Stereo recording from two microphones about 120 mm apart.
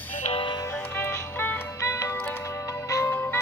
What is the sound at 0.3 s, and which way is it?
Music, 45° left (ahead or behind).